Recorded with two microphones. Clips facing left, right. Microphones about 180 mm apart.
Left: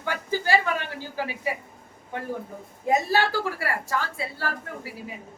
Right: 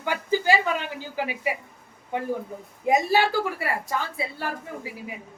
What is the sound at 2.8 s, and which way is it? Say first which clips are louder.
A woman's voice: right 2 dB; 15° right (ahead or behind).